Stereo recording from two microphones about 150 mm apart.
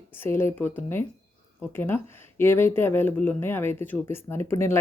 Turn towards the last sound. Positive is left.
turn(degrees=15)  # may be behind; listen again after turning